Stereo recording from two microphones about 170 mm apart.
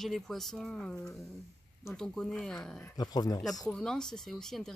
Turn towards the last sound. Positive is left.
turn(degrees=5)  # may be behind; listen again after turning